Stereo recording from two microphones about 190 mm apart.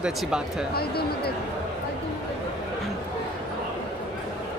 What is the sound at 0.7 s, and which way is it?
Speech, 55° left (ahead or behind).